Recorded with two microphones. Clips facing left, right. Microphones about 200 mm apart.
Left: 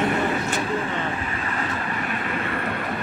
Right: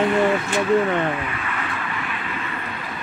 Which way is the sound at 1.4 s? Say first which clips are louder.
Left 1 dB; 40° left (ahead or behind).